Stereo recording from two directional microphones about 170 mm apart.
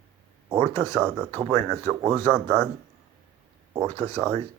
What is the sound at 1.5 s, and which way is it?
Speech, 15° left (ahead or behind).